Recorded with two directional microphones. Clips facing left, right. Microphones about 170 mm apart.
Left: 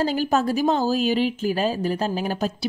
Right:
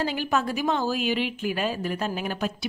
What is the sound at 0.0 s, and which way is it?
Speech, 40° left (ahead or behind).